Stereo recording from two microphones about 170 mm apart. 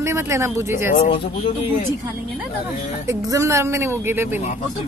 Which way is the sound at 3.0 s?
20° right (ahead or behind).